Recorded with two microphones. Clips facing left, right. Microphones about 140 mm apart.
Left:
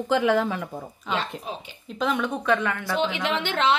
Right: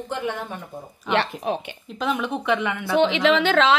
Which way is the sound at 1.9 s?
Centre (ahead or behind).